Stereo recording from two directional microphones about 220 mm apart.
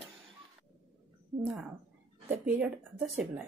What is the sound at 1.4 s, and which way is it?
Speech, centre (ahead or behind).